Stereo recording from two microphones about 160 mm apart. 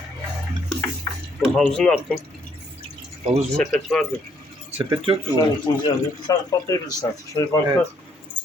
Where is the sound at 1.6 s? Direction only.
5° left (ahead or behind).